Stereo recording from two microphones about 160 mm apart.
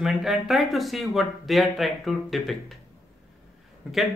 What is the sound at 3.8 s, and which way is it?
Speech, centre (ahead or behind).